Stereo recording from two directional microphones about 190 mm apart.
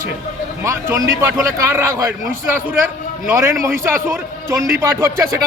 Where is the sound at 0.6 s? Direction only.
15° right (ahead or behind).